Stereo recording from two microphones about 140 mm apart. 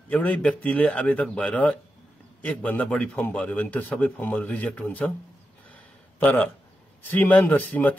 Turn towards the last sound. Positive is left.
turn(degrees=10)  # may be behind; listen again after turning